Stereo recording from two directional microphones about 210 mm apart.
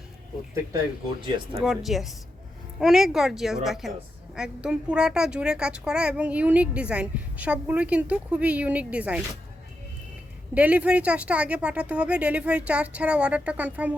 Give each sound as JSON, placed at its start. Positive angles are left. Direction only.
{"t": 1.6, "sound": "a woman's voice", "side_deg": 0}
{"t": 10.5, "sound": "speech", "side_deg": -5}